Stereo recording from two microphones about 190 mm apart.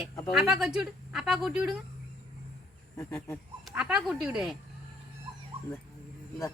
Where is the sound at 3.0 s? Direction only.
15° left (ahead or behind).